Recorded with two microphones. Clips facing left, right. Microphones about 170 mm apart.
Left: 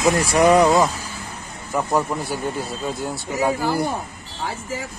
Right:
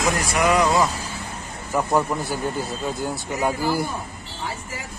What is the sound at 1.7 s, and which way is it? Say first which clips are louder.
Speech: even; 5° right (ahead or behind).